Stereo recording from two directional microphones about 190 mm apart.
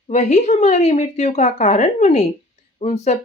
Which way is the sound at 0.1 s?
40° left (ahead or behind).